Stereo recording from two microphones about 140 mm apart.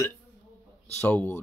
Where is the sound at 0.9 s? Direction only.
10° left (ahead or behind).